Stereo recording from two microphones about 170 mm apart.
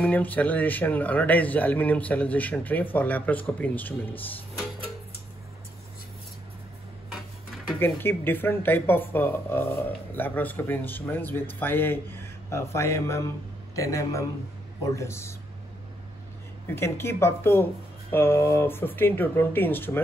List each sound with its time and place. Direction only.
0.0 s speech: 10° left (ahead or behind)
7.1 s a sound: centre (ahead or behind)
7.8 s a man's voice: 10° left (ahead or behind)
16.6 s speech: 15° left (ahead or behind)